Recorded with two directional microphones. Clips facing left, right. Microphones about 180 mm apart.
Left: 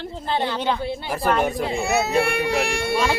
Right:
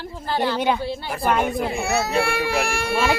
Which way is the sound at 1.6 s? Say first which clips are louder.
Left 1 dB; 20° left (ahead or behind).